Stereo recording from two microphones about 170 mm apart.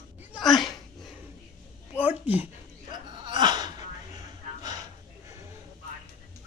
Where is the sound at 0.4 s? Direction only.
Centre (ahead or behind).